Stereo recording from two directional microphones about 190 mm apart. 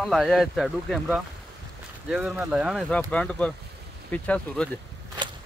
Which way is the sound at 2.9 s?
5° left (ahead or behind).